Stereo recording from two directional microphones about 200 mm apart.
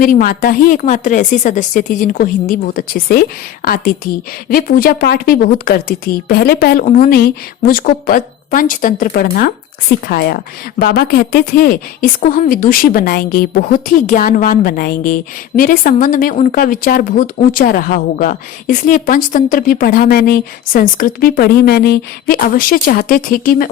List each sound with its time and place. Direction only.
0.0 s a woman's voice: 45° left (ahead or behind)